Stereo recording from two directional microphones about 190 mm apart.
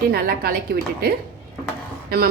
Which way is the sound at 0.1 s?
55° right (ahead or behind).